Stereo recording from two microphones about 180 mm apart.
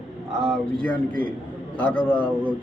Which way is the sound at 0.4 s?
5° left (ahead or behind).